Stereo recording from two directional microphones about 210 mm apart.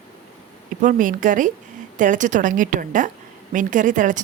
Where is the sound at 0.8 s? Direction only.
40° right (ahead or behind).